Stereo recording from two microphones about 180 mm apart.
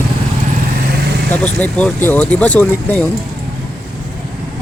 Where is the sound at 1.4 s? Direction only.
5° left (ahead or behind).